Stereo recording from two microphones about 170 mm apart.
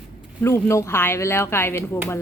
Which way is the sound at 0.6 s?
15° left (ahead or behind).